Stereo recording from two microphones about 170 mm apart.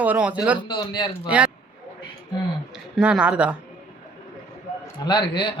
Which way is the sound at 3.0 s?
5° right (ahead or behind).